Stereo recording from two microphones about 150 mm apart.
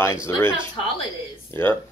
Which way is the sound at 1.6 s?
15° left (ahead or behind).